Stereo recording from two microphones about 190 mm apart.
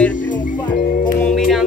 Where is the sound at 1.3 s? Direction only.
Centre (ahead or behind).